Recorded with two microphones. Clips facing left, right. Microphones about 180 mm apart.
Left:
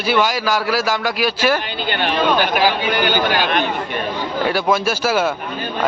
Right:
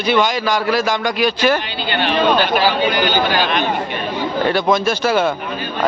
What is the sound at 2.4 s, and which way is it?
Speech, 15° left (ahead or behind).